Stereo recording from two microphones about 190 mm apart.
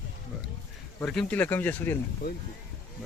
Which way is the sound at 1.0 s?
5° left (ahead or behind).